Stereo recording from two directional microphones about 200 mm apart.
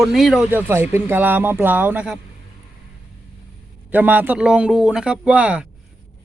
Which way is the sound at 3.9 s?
10° right (ahead or behind).